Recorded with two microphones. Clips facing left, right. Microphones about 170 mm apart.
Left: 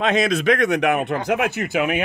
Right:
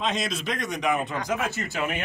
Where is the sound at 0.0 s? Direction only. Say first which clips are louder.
Left 10 dB; 60° left (ahead or behind).